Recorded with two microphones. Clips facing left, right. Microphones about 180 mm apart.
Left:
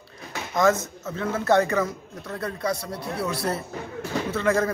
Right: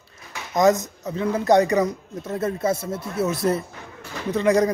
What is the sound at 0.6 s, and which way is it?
Speech, 20° right (ahead or behind).